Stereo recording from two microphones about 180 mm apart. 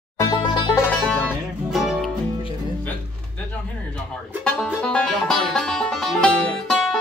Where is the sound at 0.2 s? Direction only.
25° left (ahead or behind).